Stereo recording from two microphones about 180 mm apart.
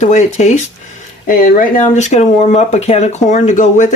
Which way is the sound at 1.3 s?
50° left (ahead or behind).